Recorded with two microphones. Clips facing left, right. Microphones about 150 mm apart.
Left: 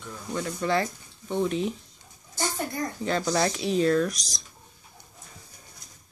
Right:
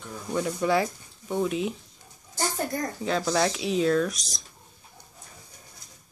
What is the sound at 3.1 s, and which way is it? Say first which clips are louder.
Speech: right 1 dB; centre (ahead or behind).